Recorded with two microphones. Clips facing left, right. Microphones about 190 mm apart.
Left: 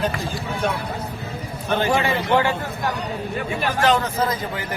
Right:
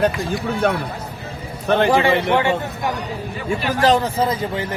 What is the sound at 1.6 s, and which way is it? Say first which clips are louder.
Speech: right 5 dB; 65° right (ahead or behind).